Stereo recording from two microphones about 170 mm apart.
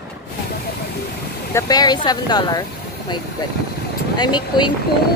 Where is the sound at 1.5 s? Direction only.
20° left (ahead or behind).